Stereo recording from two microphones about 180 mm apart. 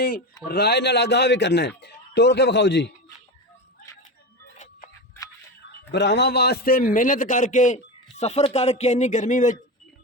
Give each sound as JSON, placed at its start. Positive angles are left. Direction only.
{"t": 0.4, "sound": "a man's voice", "side_deg": 65}
{"t": 4.5, "sound": "a sound", "side_deg": 40}
{"t": 5.9, "sound": "a man's voice", "side_deg": 75}